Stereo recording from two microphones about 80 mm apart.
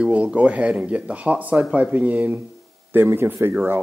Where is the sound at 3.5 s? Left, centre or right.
Centre.